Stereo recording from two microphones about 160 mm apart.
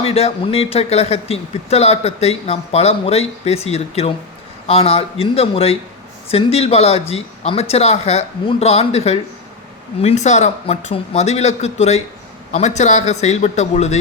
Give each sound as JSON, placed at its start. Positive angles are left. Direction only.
{"t": 0.0, "sound": "a man's voice", "side_deg": 40}